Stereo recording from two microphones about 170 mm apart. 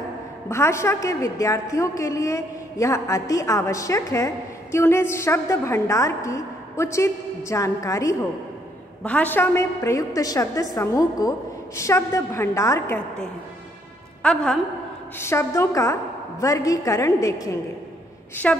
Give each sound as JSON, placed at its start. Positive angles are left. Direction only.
{"t": 0.5, "sound": "a woman's voice", "side_deg": 15}
{"t": 14.2, "sound": "a woman's voice", "side_deg": 5}
{"t": 15.1, "sound": "a woman's voice", "side_deg": 15}